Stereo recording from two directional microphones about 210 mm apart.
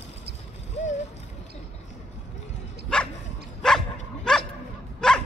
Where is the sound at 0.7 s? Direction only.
35° left (ahead or behind).